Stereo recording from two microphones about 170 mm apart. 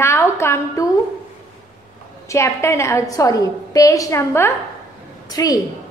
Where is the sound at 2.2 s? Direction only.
15° left (ahead or behind).